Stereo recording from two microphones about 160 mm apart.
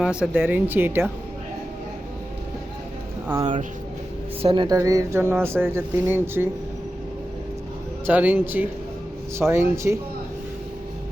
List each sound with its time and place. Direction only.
0.0 s speech: 5° right (ahead or behind)
4.4 s speech: 30° right (ahead or behind); by 6.5 s 15° right (ahead or behind)
8.0 s speech: 10° right (ahead or behind)